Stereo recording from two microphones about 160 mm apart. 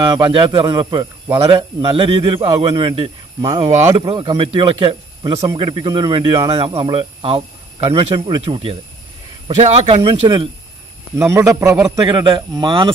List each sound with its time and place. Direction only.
0.0 s speech: 30° right (ahead or behind)
9.8 s speech: 35° right (ahead or behind)